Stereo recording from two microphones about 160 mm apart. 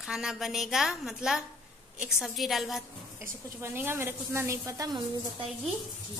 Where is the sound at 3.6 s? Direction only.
15° right (ahead or behind).